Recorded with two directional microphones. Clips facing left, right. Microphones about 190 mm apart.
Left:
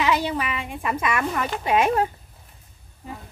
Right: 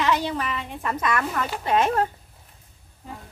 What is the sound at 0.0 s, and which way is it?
A woman's voice, 10° left (ahead or behind).